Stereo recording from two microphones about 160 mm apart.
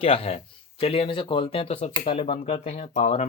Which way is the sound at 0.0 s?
35° left (ahead or behind).